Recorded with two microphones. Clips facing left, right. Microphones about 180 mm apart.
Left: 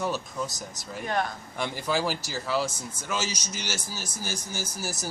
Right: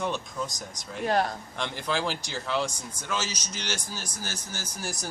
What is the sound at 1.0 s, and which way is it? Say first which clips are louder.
Speech: right 3 dB; 35° right (ahead or behind).